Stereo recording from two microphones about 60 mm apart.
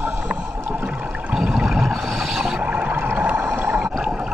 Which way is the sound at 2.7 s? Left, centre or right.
Right.